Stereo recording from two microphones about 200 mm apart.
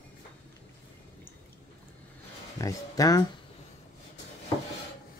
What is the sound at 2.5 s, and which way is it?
Speech, 15° left (ahead or behind).